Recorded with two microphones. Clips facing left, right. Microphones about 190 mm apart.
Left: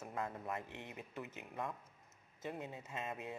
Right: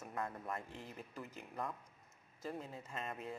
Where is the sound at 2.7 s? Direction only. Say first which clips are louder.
Left 1 dB; 5° left (ahead or behind).